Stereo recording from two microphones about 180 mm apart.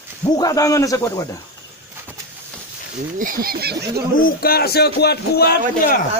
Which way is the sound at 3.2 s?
50° right (ahead or behind).